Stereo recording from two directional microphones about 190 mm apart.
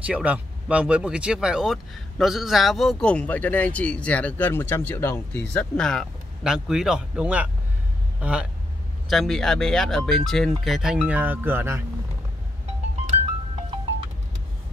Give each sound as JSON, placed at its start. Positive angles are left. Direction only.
{"t": 0.0, "sound": "speech", "side_deg": -5}